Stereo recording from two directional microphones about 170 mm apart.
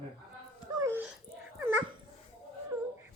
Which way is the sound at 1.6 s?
10° right (ahead or behind).